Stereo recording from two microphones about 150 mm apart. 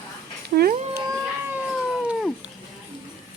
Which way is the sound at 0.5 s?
90° right.